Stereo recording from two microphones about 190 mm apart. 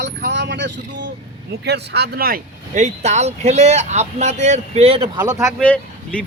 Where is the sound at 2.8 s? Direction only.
35° right (ahead or behind).